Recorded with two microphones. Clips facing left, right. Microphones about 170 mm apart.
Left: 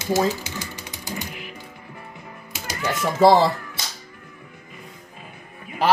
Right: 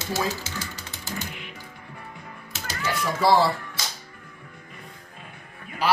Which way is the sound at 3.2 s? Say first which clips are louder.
Left 4 dB; 20° left (ahead or behind).